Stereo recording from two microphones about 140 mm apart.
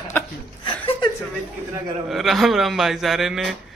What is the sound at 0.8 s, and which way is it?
Chuckle, 40° left (ahead or behind).